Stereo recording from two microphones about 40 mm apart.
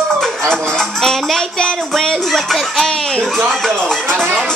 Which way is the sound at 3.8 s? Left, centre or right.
Centre.